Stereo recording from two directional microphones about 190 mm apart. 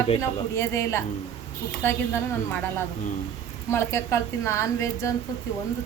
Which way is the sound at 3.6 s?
15° left (ahead or behind).